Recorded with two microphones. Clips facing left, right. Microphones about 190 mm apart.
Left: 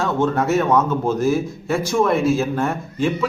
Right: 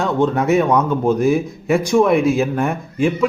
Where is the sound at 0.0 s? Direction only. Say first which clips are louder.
Right 2 dB; 15° right (ahead or behind).